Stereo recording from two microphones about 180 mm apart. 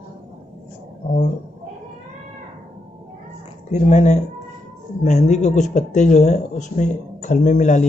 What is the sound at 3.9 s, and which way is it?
Speech, 40° left (ahead or behind).